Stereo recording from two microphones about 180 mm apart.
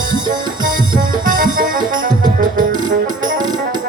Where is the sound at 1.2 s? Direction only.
50° right (ahead or behind).